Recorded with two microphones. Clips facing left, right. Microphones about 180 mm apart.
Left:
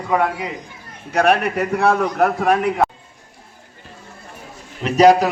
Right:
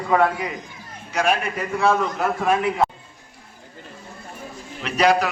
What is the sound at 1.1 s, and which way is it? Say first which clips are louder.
A man's voice: left 6 dB; 60° left (ahead or behind).